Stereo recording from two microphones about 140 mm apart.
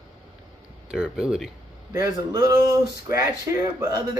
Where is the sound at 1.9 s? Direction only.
25° right (ahead or behind).